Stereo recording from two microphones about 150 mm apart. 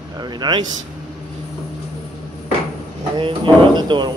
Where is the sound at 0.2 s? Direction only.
30° right (ahead or behind).